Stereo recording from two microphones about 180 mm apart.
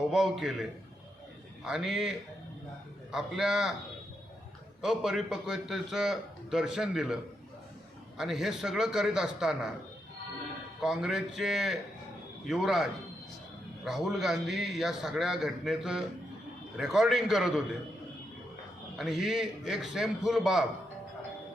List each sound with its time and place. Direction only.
0.1 s a man's voice: centre (ahead or behind)
4.8 s a man's voice: centre (ahead or behind)
8.2 s a man's voice: centre (ahead or behind)
10.8 s a man's voice: 5° right (ahead or behind)
18.9 s a man's voice: centre (ahead or behind)